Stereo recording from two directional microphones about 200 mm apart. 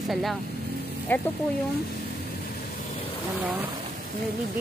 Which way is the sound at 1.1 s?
10° left (ahead or behind).